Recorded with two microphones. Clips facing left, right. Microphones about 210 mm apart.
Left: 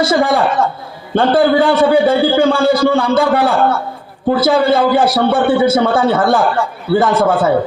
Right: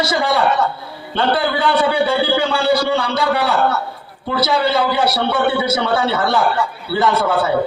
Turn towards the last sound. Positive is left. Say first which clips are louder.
# left 5 dB
turn(degrees=50)  # may be behind; listen again after turning